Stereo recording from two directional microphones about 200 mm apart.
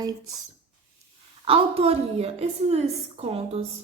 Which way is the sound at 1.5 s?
30° right (ahead or behind).